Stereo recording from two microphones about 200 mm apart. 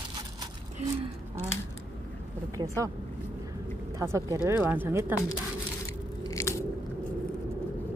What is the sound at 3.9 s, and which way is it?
Speech, 15° right (ahead or behind).